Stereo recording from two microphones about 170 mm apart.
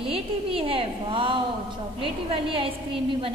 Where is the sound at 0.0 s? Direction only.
35° right (ahead or behind).